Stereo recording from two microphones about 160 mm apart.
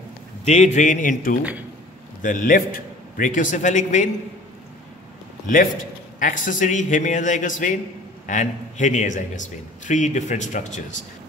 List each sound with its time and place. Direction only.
0.5 s a man's voice: 50° left (ahead or behind)
6.1 s a man's voice: 55° left (ahead or behind)